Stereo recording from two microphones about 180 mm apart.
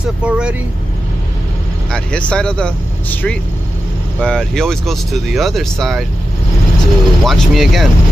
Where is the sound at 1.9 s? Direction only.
5° left (ahead or behind).